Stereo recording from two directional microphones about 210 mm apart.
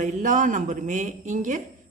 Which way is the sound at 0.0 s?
35° right (ahead or behind).